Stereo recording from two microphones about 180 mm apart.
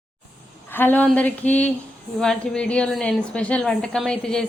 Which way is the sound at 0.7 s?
10° left (ahead or behind).